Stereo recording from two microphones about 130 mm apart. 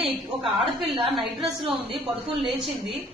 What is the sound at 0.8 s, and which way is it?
Speech, 50° right (ahead or behind).